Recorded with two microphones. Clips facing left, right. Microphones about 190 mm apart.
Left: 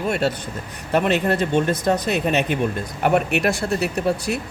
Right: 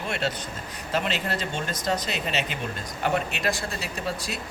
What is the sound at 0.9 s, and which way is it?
Speech, 55° left (ahead or behind).